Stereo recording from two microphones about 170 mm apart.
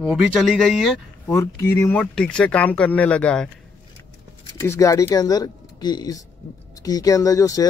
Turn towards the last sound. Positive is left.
turn(degrees=20)  # may be behind; listen again after turning